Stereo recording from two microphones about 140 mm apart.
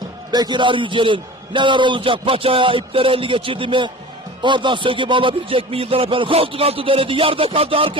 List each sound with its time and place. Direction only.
0.3 s a man's voice: 30° right (ahead or behind)